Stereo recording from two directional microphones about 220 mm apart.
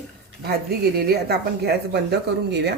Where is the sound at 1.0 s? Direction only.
45° right (ahead or behind).